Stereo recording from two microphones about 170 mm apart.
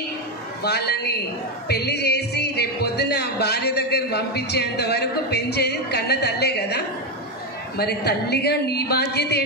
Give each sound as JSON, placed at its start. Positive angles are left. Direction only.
{"t": 0.7, "sound": "speech", "side_deg": 70}